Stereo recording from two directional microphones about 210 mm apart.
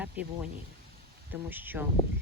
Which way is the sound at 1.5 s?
10° right (ahead or behind).